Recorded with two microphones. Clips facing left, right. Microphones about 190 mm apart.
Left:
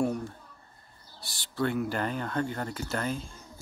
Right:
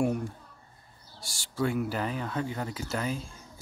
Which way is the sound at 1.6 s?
5° right (ahead or behind).